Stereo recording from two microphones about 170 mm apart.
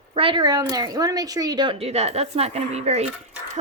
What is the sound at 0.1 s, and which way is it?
A woman's voice, 30° right (ahead or behind).